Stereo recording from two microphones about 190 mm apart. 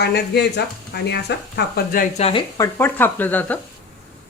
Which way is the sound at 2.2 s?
35° left (ahead or behind).